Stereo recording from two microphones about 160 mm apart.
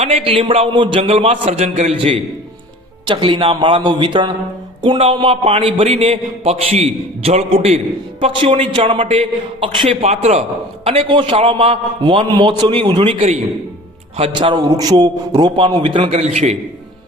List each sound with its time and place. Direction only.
0.0 s a man's voice: 35° right (ahead or behind)
16.1 s a man's voice: 45° right (ahead or behind)